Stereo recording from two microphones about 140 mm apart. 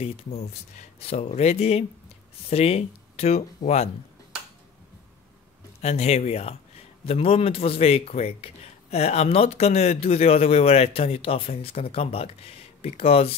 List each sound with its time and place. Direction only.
0.0 s a man's voice: 50° left (ahead or behind)
5.8 s a man's voice: 50° left (ahead or behind)